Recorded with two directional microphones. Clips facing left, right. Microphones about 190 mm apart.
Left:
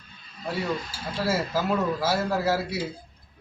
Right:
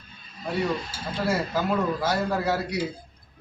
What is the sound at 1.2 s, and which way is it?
A man's voice, 5° left (ahead or behind).